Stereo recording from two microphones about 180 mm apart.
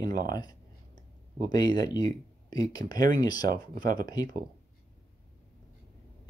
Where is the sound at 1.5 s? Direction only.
20° left (ahead or behind).